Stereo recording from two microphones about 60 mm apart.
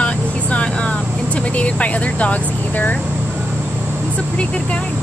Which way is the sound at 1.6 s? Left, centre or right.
Left.